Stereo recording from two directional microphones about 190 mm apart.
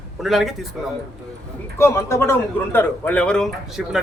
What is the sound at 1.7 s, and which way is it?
A man's voice, 15° left (ahead or behind).